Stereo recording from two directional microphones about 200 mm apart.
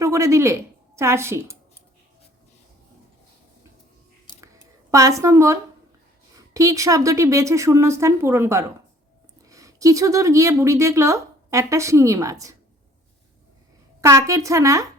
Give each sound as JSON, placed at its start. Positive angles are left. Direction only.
{"t": 0.0, "sound": "a woman's voice", "side_deg": -15}
{"t": 4.9, "sound": "a woman's voice", "side_deg": -15}
{"t": 14.0, "sound": "a woman's voice", "side_deg": -15}